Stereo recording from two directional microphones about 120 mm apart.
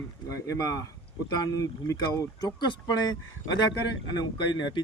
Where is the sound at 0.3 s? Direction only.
30° left (ahead or behind).